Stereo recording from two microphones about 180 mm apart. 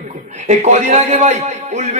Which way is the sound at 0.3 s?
40° right (ahead or behind).